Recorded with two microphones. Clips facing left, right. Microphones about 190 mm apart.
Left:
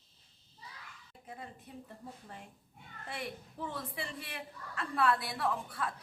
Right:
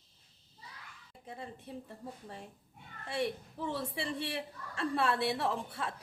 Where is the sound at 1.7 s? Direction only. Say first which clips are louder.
Right 7 dB; 30° right (ahead or behind).